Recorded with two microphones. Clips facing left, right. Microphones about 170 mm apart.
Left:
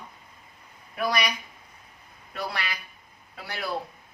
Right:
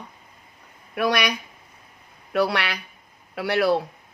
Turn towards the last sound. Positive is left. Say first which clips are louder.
# right 13 dB
turn(degrees=-75)  # may be behind; listen again after turning